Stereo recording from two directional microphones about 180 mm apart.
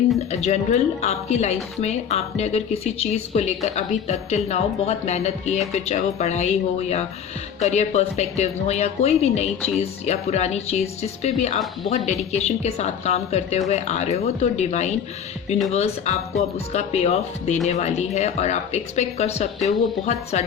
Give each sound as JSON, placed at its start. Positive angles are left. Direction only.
{"t": 0.3, "sound": "a woman's voice", "side_deg": 35}